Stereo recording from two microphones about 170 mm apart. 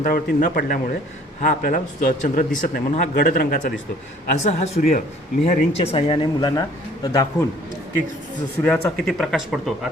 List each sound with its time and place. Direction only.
0.0 s speech: 55° left (ahead or behind)
4.4 s speech: 40° left (ahead or behind)
6.6 s a man's voice: 20° left (ahead or behind)
8.6 s speech: 5° left (ahead or behind)